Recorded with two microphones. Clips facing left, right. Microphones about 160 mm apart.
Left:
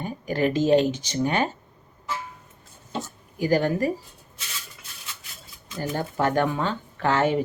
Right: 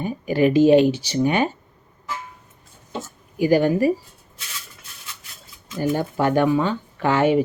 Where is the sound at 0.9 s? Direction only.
50° left (ahead or behind).